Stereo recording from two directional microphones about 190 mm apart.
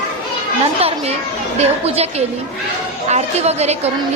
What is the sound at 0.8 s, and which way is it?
A child's voice, 30° right (ahead or behind).